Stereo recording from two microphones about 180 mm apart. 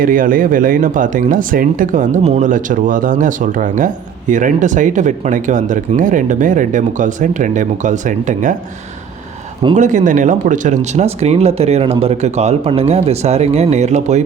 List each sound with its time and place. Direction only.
0.0 s speech: 50° right (ahead or behind)
9.7 s speech: 45° right (ahead or behind)